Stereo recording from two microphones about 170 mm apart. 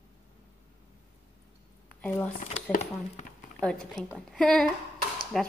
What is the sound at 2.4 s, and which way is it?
Speech, 45° left (ahead or behind).